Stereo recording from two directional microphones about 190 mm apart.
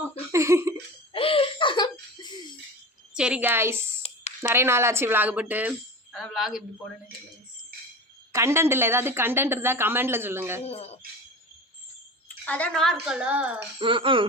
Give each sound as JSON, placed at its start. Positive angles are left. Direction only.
{"t": 0.3, "sound": "a sound", "side_deg": -15}
{"t": 1.1, "sound": "laughter", "side_deg": 30}
{"t": 3.2, "sound": "a woman's voice", "side_deg": -5}
{"t": 4.0, "sound": "a sound", "side_deg": 35}
{"t": 4.4, "sound": "a woman's voice", "side_deg": -15}
{"t": 6.1, "sound": "speech", "side_deg": 0}
{"t": 8.3, "sound": "a woman's voice", "side_deg": -15}
{"t": 10.7, "sound": "speech", "side_deg": 35}
{"t": 12.3, "sound": "a child's voice", "side_deg": 5}
{"t": 13.7, "sound": "speech", "side_deg": -25}